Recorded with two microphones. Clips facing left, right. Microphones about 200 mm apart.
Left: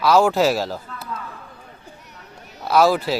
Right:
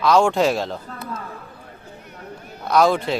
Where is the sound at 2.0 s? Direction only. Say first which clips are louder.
Right 6 dB; 55° right (ahead or behind).